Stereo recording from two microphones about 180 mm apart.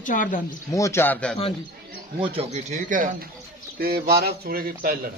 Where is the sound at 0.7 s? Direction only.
15° left (ahead or behind).